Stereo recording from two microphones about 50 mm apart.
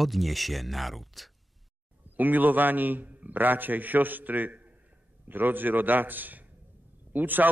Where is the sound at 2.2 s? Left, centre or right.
Right.